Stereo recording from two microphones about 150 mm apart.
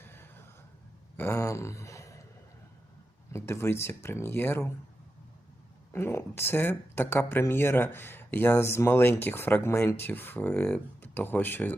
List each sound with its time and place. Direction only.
0.0 s vehicle: 15° left (ahead or behind)
1.1 s speech: 15° left (ahead or behind)
3.3 s speech: 20° left (ahead or behind)
5.9 s speech: 15° left (ahead or behind)